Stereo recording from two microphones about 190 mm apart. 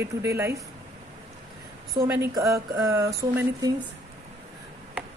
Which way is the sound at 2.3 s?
20° right (ahead or behind).